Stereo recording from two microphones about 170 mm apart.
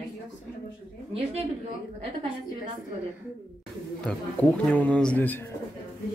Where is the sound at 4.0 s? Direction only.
5° left (ahead or behind).